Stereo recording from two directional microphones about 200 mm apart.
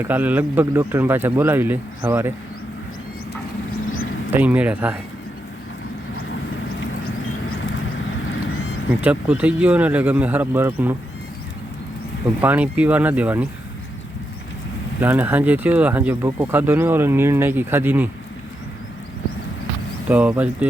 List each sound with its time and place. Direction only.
0.0 s speech: 10° right (ahead or behind)
4.3 s speech: 10° right (ahead or behind)
7.5 s vehicle: 75° left (ahead or behind)
8.9 s speech: 10° right (ahead or behind)
12.4 s speech: 10° right (ahead or behind)
15.0 s speech: 10° right (ahead or behind)
20.1 s speech: 10° right (ahead or behind)